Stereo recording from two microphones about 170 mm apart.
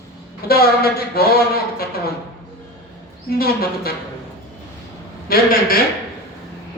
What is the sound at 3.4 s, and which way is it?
Speech, 65° left (ahead or behind).